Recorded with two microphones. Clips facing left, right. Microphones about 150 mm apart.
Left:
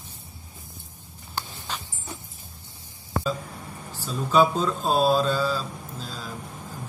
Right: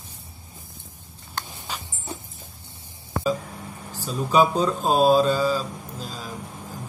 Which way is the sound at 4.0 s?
10° right (ahead or behind).